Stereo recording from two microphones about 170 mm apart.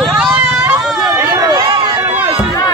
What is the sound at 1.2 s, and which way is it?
Chatter, 20° right (ahead or behind).